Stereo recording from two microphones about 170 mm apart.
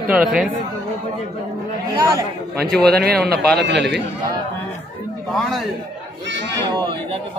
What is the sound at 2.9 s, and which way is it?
Speech, 65° right (ahead or behind).